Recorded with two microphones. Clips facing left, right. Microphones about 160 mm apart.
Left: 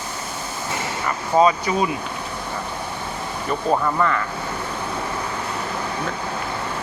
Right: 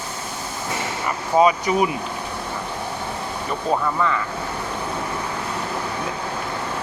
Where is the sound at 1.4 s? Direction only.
15° right (ahead or behind).